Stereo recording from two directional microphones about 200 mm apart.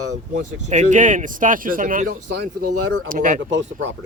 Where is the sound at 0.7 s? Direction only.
40° right (ahead or behind).